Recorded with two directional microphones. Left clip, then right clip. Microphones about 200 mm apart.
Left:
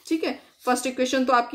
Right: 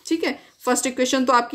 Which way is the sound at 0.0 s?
35° right (ahead or behind).